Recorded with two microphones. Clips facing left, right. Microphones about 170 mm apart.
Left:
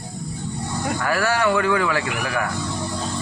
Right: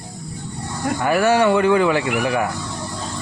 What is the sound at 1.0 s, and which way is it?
Speech, 20° right (ahead or behind).